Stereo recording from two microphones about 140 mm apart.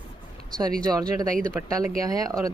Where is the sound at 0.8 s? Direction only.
25° right (ahead or behind).